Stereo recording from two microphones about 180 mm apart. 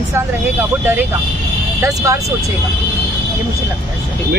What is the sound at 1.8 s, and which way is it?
Speech, 15° right (ahead or behind).